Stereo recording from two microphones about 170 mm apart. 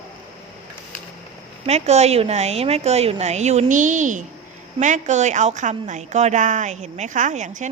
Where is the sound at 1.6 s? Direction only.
40° right (ahead or behind).